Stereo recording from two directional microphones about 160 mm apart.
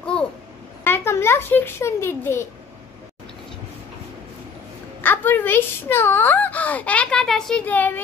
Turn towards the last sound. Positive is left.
turn(degrees=10)  # may be behind; listen again after turning